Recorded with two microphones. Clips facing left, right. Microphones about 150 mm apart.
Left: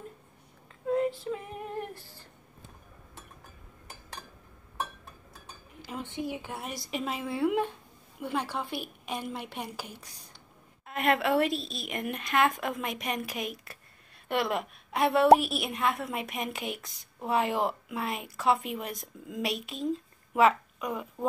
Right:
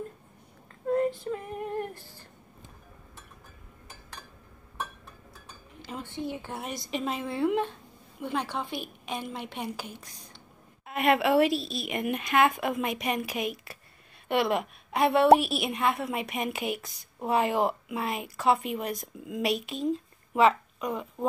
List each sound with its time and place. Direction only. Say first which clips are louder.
0.8 s female singing: right 2 dB; centre (ahead or behind)
5.9 s a sound: even; 10° left (ahead or behind)
6.2 s a woman's voice: right 3 dB; 15° left (ahead or behind)
6.5 s a woman's voice: right 2 dB; 5° left (ahead or behind)
10.9 s a woman's voice: right 3 dB; 5° right (ahead or behind)